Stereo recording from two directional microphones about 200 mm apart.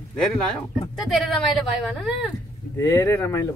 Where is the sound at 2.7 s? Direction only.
15° left (ahead or behind).